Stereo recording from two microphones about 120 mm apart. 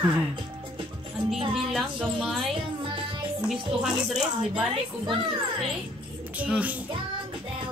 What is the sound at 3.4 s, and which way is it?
Speech, 5° right (ahead or behind).